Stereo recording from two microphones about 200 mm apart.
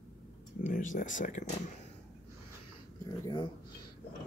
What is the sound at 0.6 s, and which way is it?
Speech, 40° left (ahead or behind).